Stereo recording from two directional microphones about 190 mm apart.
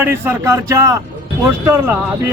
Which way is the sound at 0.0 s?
10° right (ahead or behind).